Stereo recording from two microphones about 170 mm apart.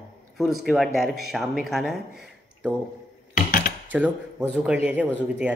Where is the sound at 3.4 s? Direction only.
60° left (ahead or behind).